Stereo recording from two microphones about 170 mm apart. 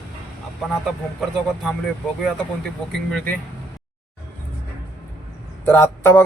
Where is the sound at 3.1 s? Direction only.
5° left (ahead or behind).